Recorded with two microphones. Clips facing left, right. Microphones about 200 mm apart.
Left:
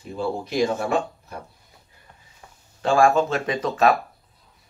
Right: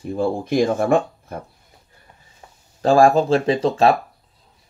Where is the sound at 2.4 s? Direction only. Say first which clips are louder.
Right 2 dB; 25° right (ahead or behind).